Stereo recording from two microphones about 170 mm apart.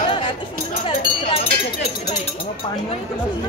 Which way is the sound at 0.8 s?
35° left (ahead or behind).